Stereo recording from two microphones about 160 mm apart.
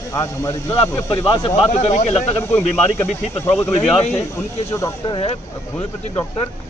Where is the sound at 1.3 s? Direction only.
35° left (ahead or behind).